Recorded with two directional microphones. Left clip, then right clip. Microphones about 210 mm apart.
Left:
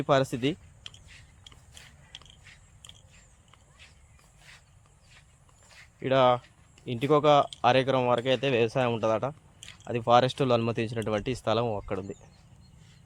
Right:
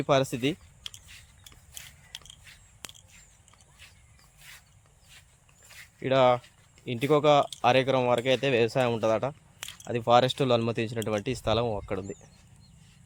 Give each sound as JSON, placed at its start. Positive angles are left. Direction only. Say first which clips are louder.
{"t": 0.0, "sound": "speech", "louder": "even", "side_deg": 0}
{"t": 0.5, "sound": "typing", "louder": "right 2 dB", "side_deg": -15}
{"t": 2.4, "sound": "biting", "louder": "right 5 dB", "side_deg": -20}
{"t": 3.8, "sound": "walk", "louder": "right 2 dB", "side_deg": -15}
{"t": 4.4, "sound": "a sound", "louder": "right 3 dB", "side_deg": -15}
{"t": 5.6, "sound": "dog", "louder": "right 4 dB", "side_deg": -10}
{"t": 6.0, "sound": "speech", "louder": "even", "side_deg": 0}